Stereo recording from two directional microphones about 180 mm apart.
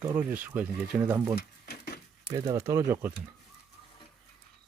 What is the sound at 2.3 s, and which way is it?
Speech, 25° right (ahead or behind).